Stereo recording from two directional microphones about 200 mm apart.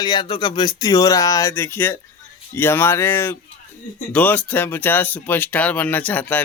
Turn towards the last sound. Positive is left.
turn(degrees=10)  # may be behind; listen again after turning